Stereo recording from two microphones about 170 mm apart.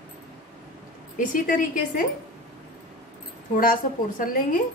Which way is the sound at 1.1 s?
50° left (ahead or behind).